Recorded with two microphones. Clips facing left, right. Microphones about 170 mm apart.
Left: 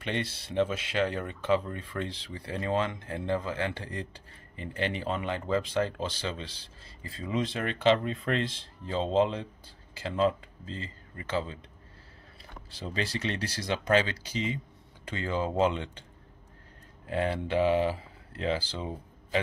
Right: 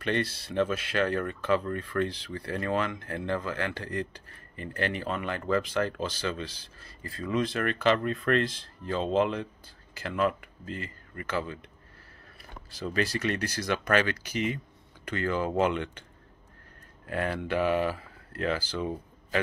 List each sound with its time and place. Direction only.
0.0 s speech: 20° left (ahead or behind)
12.7 s speech: 25° left (ahead or behind)
13.9 s speech: 60° right (ahead or behind)
15.2 s speech: 20° left (ahead or behind)
17.1 s speech: 25° left (ahead or behind)